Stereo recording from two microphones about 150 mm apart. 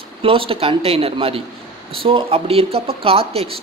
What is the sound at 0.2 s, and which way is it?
A man's voice, 35° right (ahead or behind).